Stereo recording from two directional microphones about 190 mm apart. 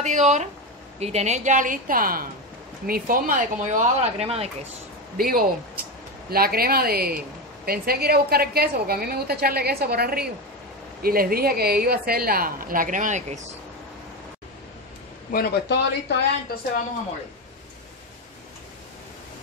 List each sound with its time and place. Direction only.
0.0 s speech: 40° right (ahead or behind)
5.1 s a woman's voice: 50° right (ahead or behind)
15.3 s speech: 60° left (ahead or behind)